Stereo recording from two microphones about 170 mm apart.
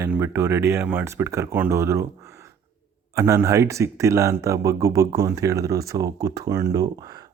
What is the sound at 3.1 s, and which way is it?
Speech, 15° right (ahead or behind).